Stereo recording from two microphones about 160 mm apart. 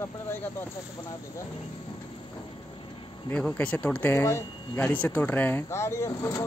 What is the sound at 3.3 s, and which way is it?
Speech, 5° left (ahead or behind).